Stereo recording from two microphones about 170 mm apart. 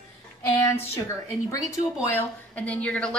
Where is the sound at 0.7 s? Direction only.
15° left (ahead or behind).